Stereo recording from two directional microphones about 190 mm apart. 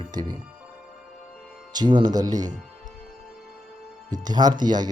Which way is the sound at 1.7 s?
25° right (ahead or behind).